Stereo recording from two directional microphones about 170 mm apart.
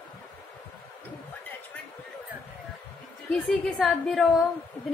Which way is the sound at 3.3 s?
Centre (ahead or behind).